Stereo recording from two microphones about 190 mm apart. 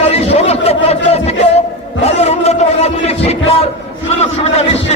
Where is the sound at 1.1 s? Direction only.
35° left (ahead or behind).